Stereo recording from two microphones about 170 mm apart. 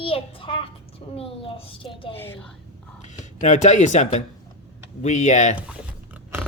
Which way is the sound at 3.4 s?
45° left (ahead or behind).